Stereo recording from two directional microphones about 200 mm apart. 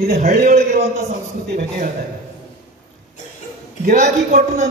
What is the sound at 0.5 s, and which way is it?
A man's voice, 35° right (ahead or behind).